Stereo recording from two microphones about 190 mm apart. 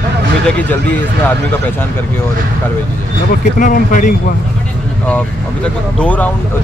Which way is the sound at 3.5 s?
45° left (ahead or behind).